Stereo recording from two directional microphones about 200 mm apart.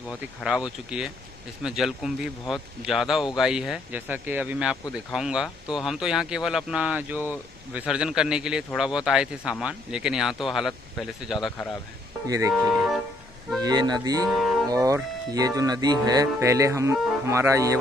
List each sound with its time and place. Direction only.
0.4 s speech: 5° right (ahead or behind)
12.3 s speech: 15° right (ahead or behind)
12.5 s music: centre (ahead or behind)
13.6 s speech: 20° right (ahead or behind)
14.3 s music: centre (ahead or behind)
14.7 s speech: 15° right (ahead or behind)